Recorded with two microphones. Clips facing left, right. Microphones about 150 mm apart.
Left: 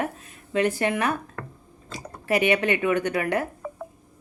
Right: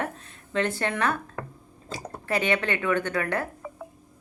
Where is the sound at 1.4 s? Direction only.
20° right (ahead or behind).